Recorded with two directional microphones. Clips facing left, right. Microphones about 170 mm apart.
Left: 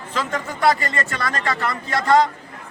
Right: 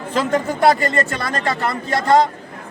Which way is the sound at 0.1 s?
40° right (ahead or behind).